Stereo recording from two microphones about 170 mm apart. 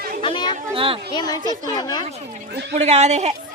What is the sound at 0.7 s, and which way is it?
Speech, 30° right (ahead or behind).